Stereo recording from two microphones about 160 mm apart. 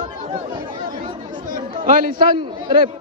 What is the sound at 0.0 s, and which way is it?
Chatter, 30° right (ahead or behind).